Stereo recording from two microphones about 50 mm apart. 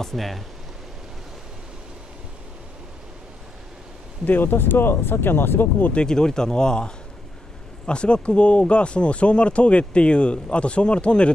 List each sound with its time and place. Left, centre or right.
0.0 s speech: centre
4.3 s speech: left
5.9 s speech: centre